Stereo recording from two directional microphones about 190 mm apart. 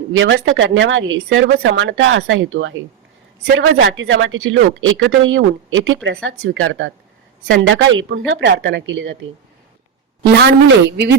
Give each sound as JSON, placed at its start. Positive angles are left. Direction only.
{"t": 0.1, "sound": "speech", "side_deg": -85}
{"t": 10.4, "sound": "a woman's voice", "side_deg": -65}